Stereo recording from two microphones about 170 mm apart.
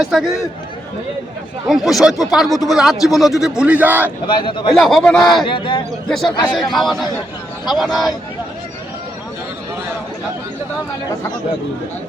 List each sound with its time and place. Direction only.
0.0 s a man's voice: centre (ahead or behind)
1.6 s a man's voice: centre (ahead or behind)
4.3 s a man's voice: 30° left (ahead or behind)
4.7 s a man's voice: centre (ahead or behind)
5.5 s a man's voice: 30° left (ahead or behind)
6.1 s a man's voice: centre (ahead or behind)